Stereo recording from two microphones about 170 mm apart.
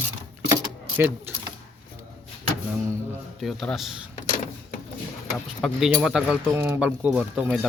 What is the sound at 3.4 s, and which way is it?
Speech, centre (ahead or behind).